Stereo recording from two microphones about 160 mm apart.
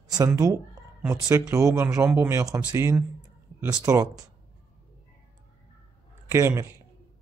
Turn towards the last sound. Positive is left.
turn(degrees=-15)  # may be behind; listen again after turning